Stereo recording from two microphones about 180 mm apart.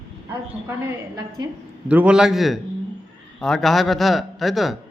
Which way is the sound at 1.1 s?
25° right (ahead or behind).